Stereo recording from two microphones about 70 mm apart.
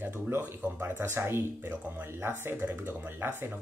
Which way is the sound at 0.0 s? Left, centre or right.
Right.